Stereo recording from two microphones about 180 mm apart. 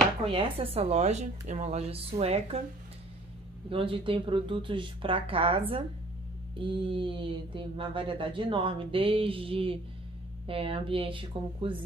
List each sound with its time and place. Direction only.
0.2 s speech: 30° right (ahead or behind)
3.7 s speech: 30° right (ahead or behind)